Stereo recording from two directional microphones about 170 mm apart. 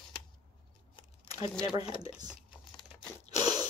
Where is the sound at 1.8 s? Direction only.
35° left (ahead or behind).